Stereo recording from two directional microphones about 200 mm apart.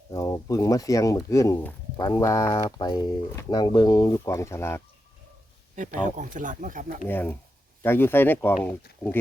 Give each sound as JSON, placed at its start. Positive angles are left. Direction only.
{"t": 0.1, "sound": "speech", "side_deg": 15}
{"t": 5.7, "sound": "speech", "side_deg": -40}
{"t": 7.1, "sound": "speech", "side_deg": 10}